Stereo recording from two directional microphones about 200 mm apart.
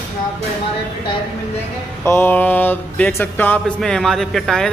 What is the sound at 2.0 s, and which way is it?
A man's voice, 10° left (ahead or behind).